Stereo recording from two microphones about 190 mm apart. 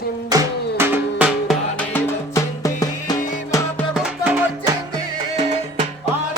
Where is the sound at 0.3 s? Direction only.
15° right (ahead or behind).